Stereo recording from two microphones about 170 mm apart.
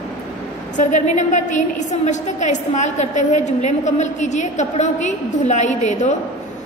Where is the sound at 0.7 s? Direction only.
45° left (ahead or behind).